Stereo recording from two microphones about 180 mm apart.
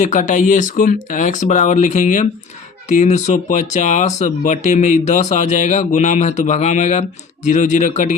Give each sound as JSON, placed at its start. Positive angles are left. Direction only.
{"t": 0.0, "sound": "speech", "side_deg": 45}